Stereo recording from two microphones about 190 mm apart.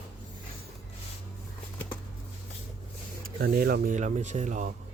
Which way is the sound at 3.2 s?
50° right (ahead or behind).